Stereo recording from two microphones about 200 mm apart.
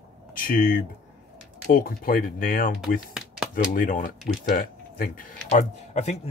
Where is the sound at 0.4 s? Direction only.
45° left (ahead or behind).